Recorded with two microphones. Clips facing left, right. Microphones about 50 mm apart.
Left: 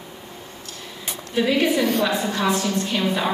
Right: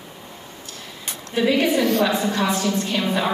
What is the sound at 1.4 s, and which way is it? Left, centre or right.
A woman's voice, centre.